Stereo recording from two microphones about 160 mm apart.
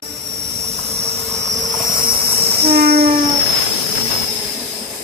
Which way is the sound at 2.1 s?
80° right.